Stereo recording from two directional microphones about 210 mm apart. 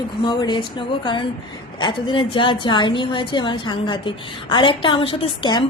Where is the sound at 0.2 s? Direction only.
20° left (ahead or behind).